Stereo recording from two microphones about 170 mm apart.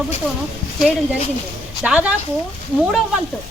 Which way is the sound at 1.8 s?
5° right (ahead or behind).